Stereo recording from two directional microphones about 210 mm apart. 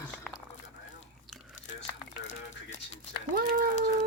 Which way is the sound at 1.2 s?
Centre (ahead or behind).